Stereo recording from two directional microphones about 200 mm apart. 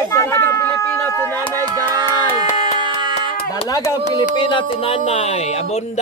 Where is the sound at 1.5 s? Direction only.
15° right (ahead or behind).